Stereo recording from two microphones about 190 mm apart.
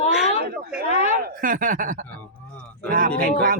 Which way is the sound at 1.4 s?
45° right (ahead or behind).